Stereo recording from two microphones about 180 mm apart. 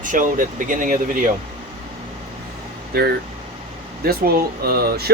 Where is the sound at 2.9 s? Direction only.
60° right (ahead or behind).